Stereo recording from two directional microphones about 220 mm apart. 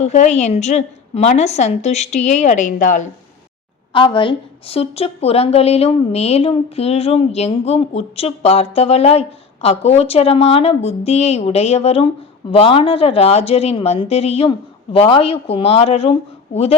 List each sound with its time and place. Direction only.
0.0 s a woman's voice: 30° left (ahead or behind)
3.9 s a woman's voice: 20° left (ahead or behind)